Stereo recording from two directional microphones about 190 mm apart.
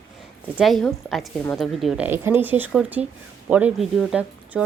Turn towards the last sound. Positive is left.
turn(degrees=-5)  # may be behind; listen again after turning